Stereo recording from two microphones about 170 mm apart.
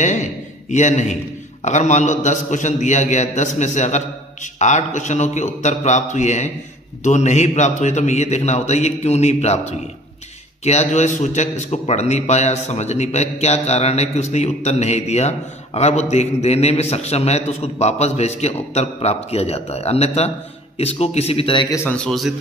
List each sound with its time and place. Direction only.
0.0 s a man's voice: 45° left (ahead or behind); by 21.7 s 30° left (ahead or behind)
21.7 s a man's voice: 10° left (ahead or behind)